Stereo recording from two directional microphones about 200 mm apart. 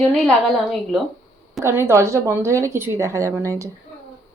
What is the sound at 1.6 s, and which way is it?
Speech, 10° right (ahead or behind).